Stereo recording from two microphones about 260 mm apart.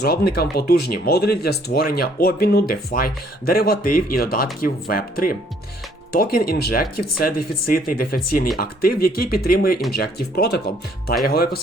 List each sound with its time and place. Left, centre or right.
0.0 s speech: left